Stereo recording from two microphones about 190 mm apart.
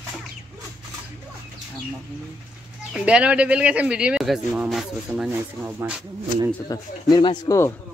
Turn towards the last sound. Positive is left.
turn(degrees=15)  # may be behind; listen again after turning